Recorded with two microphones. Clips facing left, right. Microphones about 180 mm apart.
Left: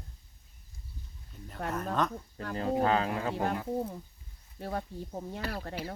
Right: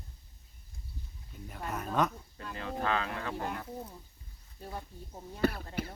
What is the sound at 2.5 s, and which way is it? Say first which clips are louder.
Speech: left 6 dB; 35° left (ahead or behind).